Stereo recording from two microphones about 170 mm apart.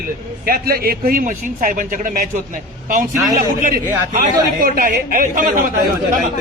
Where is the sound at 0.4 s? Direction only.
65° right (ahead or behind).